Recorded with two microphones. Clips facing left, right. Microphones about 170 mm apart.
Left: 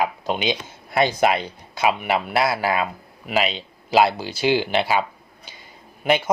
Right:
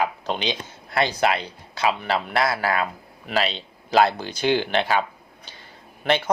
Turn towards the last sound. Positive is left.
turn(degrees=10)  # may be behind; listen again after turning